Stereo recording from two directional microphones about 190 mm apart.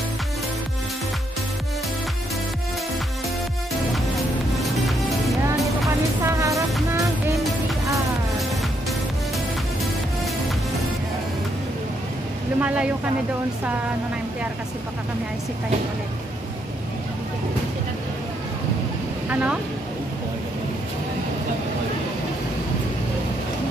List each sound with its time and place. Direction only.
5.9 s music: 15° right (ahead or behind)
12.5 s vehicle: 5° right (ahead or behind)
19.2 s speech: 10° right (ahead or behind)